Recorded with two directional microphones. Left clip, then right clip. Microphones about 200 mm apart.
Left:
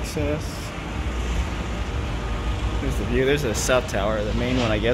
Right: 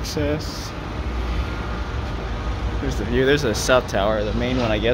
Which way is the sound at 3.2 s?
15° right (ahead or behind).